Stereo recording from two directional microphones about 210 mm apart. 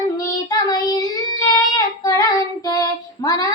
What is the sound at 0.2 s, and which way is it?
Child singing, 15° left (ahead or behind).